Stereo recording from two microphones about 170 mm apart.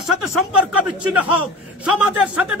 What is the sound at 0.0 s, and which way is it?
Speech, centre (ahead or behind).